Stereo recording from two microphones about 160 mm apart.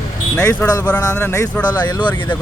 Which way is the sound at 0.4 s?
20° left (ahead or behind).